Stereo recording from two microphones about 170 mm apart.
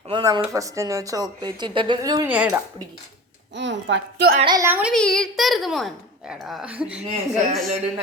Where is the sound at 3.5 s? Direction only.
90° right.